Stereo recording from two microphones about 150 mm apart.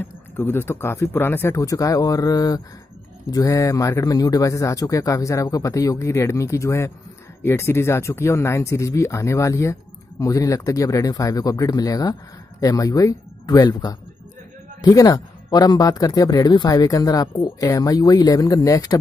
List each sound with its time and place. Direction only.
0.4 s speech: 15° left (ahead or behind)